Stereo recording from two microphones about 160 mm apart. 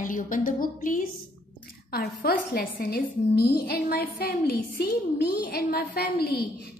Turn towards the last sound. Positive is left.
turn(degrees=80)